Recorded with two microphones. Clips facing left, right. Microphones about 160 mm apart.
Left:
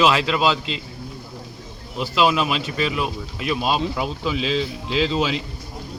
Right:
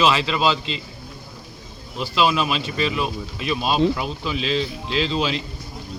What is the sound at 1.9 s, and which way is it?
Speech, 15° left (ahead or behind).